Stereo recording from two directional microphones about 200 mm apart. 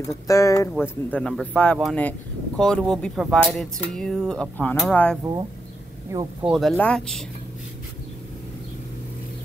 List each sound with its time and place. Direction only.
0.0 s speech: 15° left (ahead or behind)
1.1 s speech: 5° left (ahead or behind)
6.1 s speech: 15° right (ahead or behind)
6.4 s speech: 5° right (ahead or behind)